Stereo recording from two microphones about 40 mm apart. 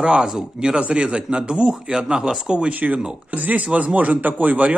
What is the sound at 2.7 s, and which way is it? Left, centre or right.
Speech, right.